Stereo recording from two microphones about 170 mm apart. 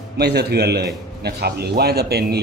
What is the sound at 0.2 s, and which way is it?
A man's voice, 75° right (ahead or behind).